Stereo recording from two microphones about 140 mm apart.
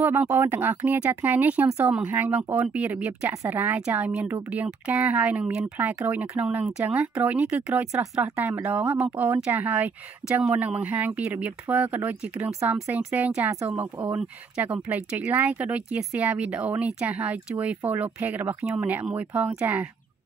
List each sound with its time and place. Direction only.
0.0 s speech: 15° right (ahead or behind)
13.9 s speech: 30° right (ahead or behind)
14.2 s speech: 10° right (ahead or behind)